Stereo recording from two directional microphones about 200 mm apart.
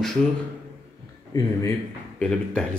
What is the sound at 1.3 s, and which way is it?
Speech, 20° left (ahead or behind).